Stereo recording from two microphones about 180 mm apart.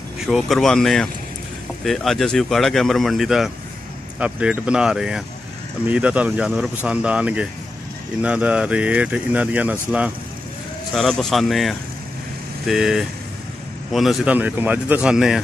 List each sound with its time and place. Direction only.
0.3 s speech: centre (ahead or behind)